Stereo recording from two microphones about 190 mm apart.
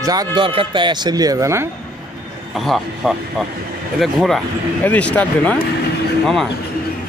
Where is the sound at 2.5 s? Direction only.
Centre (ahead or behind).